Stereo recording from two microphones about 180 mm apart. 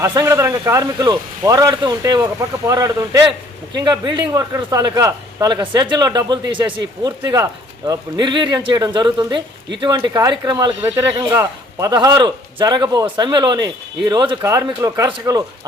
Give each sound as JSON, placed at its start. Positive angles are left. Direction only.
{"t": 0.0, "sound": "speech", "side_deg": -15}